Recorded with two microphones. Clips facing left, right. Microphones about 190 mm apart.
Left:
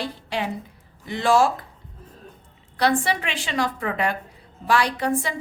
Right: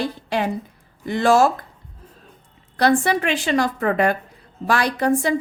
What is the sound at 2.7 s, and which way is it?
A woman's voice, 45° right (ahead or behind).